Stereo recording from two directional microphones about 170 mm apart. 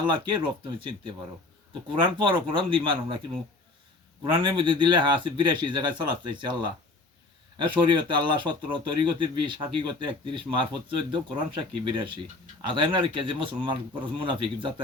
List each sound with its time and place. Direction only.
0.0 s speech: 30° right (ahead or behind)
1.9 s speech: 30° right (ahead or behind)
4.4 s speech: 30° right (ahead or behind)